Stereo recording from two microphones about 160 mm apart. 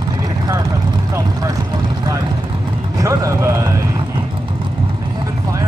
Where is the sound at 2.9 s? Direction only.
20° right (ahead or behind).